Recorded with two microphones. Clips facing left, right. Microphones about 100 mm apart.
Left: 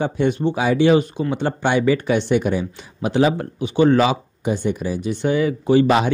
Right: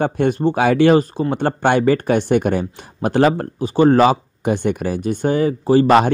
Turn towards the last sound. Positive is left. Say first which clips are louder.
# right 3 dB
turn(degrees=-50)  # may be behind; listen again after turning